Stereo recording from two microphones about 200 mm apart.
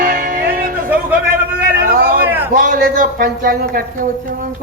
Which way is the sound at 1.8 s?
50° right (ahead or behind).